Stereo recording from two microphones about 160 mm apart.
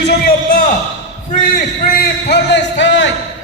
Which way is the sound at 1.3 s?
70° left (ahead or behind).